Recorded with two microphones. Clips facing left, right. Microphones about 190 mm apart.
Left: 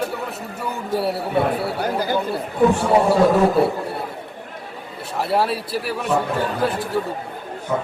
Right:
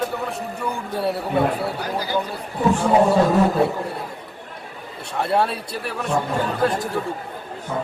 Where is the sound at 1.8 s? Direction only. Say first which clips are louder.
Left 4 dB; 50° left (ahead or behind).